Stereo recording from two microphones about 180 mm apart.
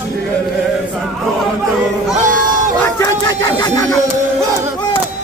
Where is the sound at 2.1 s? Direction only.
45° right (ahead or behind).